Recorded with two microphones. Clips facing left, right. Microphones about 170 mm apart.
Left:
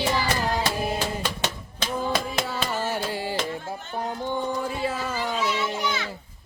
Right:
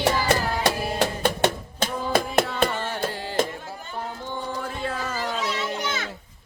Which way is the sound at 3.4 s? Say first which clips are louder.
Right 5 dB; 50° right (ahead or behind).